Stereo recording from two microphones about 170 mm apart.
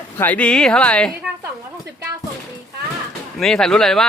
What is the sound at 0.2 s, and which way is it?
Speech, 10° left (ahead or behind).